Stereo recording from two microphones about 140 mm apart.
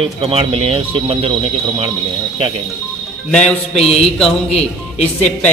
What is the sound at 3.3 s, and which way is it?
Speech, 5° left (ahead or behind).